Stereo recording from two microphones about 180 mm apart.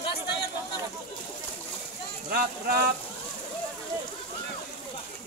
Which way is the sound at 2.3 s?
55° right (ahead or behind).